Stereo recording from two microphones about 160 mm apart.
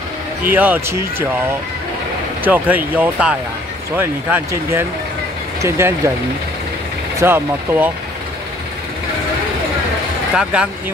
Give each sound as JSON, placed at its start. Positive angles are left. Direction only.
{"t": 0.5, "sound": "speech", "side_deg": -10}
{"t": 2.4, "sound": "speech", "side_deg": -10}
{"t": 7.2, "sound": "speech", "side_deg": -15}
{"t": 10.3, "sound": "speech", "side_deg": -5}